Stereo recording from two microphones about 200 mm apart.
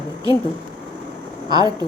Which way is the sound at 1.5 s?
20° right (ahead or behind).